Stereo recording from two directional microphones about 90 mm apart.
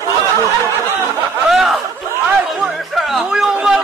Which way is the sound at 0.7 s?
25° right (ahead or behind).